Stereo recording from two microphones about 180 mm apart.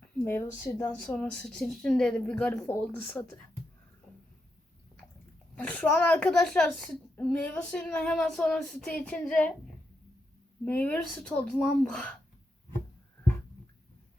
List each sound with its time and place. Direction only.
0.3 s a woman's voice: 10° left (ahead or behind)
5.5 s a child's voice: 5° left (ahead or behind)
10.7 s a child's voice: 5° left (ahead or behind)